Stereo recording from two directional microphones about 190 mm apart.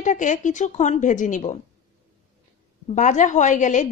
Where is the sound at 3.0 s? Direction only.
40° left (ahead or behind).